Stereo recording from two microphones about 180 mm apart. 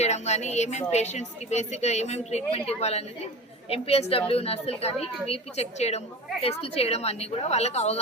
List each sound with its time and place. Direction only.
0.0 s a woman's voice: 40° left (ahead or behind)